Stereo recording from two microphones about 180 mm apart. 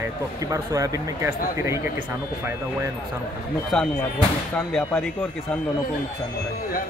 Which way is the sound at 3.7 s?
5° left (ahead or behind).